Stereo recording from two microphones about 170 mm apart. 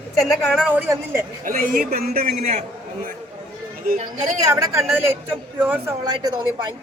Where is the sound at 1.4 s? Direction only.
55° right (ahead or behind).